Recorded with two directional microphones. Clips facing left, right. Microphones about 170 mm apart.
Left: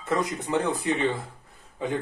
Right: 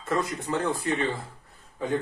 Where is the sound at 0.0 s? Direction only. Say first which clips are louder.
Left 1 dB; 20° left (ahead or behind).